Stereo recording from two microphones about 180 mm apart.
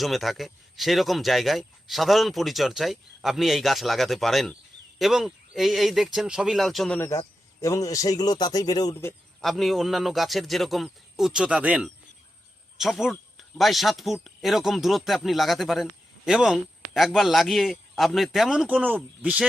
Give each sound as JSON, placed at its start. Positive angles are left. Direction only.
{"t": 0.0, "sound": "speech", "side_deg": 0}
{"t": 7.1, "sound": "speech", "side_deg": 15}
{"t": 9.4, "sound": "speech", "side_deg": 0}